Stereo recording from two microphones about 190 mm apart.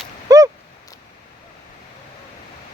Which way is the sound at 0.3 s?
20° right (ahead or behind).